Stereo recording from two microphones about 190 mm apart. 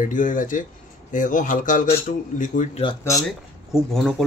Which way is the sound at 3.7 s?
Centre (ahead or behind).